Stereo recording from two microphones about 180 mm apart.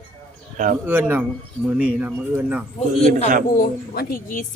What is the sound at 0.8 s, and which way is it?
Speech, 10° right (ahead or behind).